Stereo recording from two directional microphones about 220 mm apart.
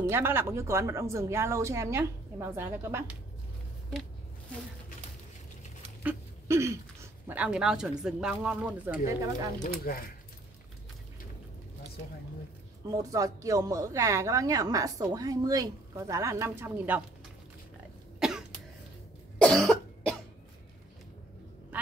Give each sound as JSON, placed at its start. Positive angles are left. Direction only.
{"t": 0.0, "sound": "speech", "side_deg": -10}
{"t": 6.0, "sound": "speech", "side_deg": -10}
{"t": 9.6, "sound": "speech", "side_deg": 40}
{"t": 12.9, "sound": "speech", "side_deg": -15}
{"t": 18.2, "sound": "cough", "side_deg": 0}